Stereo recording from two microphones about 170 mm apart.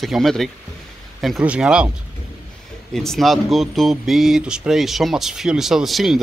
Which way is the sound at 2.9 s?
Centre (ahead or behind).